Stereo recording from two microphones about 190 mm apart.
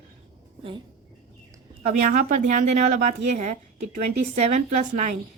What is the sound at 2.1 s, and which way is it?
A woman's voice, 40° right (ahead or behind).